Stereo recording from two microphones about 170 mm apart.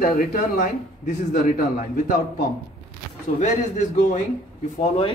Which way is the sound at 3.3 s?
45° left (ahead or behind).